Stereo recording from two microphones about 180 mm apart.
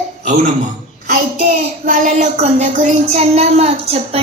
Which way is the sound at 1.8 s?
45° right (ahead or behind).